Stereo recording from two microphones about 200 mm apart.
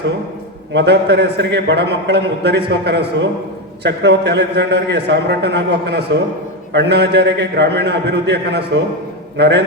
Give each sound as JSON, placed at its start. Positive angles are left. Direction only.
{"t": 0.7, "sound": "a man's voice", "side_deg": -60}